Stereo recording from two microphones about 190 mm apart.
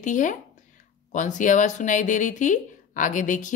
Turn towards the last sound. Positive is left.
turn(degrees=40)  # may be behind; listen again after turning